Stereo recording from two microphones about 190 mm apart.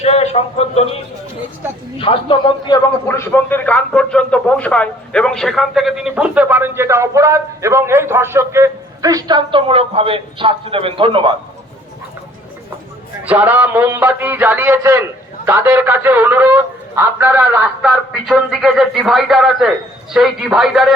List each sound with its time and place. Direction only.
0.0 s a man's voice: 35° left (ahead or behind)
2.0 s a man's voice: 25° left (ahead or behind)
3.2 s a man's voice: 10° left (ahead or behind); by 11.3 s 25° right (ahead or behind)
13.2 s a man's voice: 10° right (ahead or behind)